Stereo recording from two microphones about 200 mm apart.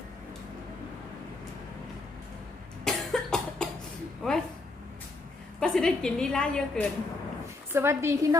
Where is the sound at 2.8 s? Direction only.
Centre (ahead or behind).